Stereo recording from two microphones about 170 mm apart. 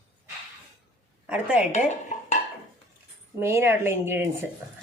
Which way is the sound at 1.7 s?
45° left (ahead or behind).